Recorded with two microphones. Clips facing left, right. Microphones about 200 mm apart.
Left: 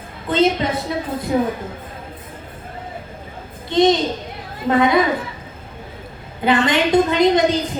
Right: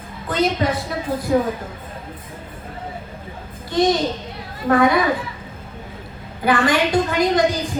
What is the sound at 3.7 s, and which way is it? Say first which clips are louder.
A woman's voice: left 3 dB; 20° left (ahead or behind).